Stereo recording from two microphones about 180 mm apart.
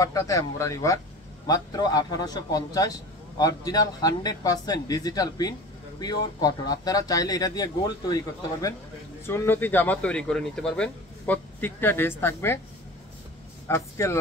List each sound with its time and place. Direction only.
0.0 s speech: 20° left (ahead or behind)
13.7 s speech: 15° left (ahead or behind)